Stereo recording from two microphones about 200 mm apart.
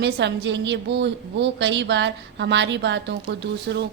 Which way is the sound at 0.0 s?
60° right (ahead or behind).